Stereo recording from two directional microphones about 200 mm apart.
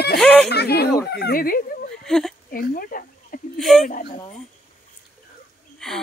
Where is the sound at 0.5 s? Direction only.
55° left (ahead or behind).